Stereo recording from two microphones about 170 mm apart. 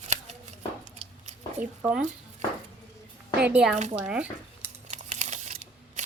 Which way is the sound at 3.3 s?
5° right (ahead or behind).